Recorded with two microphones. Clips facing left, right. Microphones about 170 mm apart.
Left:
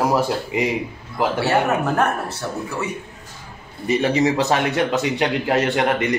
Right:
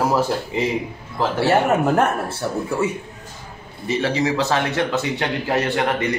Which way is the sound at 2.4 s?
20° right (ahead or behind).